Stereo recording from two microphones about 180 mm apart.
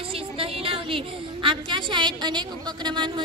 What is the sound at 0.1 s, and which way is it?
A woman's voice, 30° right (ahead or behind).